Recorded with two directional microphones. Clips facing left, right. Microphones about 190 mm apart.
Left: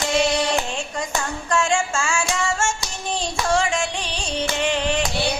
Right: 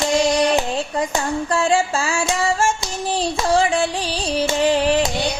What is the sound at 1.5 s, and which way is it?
Music, 35° right (ahead or behind).